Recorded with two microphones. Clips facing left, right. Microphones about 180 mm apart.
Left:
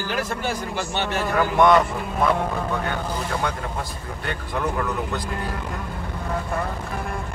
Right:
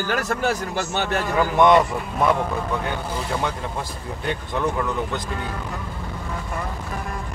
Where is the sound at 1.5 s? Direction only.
20° right (ahead or behind).